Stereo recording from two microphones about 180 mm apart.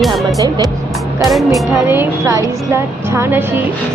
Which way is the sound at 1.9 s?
15° right (ahead or behind).